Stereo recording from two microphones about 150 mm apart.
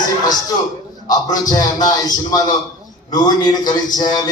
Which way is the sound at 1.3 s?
25° left (ahead or behind).